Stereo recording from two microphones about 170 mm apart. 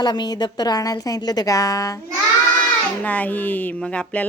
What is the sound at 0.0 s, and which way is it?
A woman's voice, 25° left (ahead or behind).